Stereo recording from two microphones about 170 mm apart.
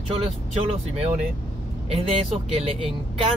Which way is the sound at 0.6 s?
40° right (ahead or behind).